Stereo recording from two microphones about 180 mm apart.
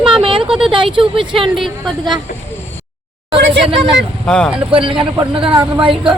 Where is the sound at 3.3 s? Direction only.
75° right (ahead or behind).